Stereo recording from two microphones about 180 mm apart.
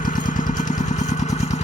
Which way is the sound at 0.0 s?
45° left (ahead or behind).